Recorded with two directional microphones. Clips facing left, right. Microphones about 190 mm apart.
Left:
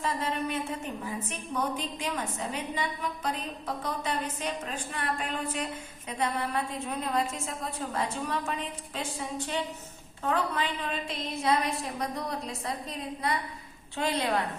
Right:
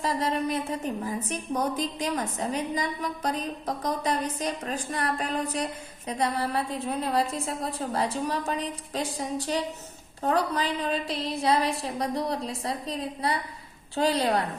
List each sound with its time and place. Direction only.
0.0 s a woman's voice: 35° right (ahead or behind)